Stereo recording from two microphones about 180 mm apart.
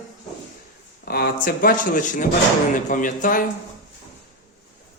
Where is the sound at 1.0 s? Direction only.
60° left (ahead or behind).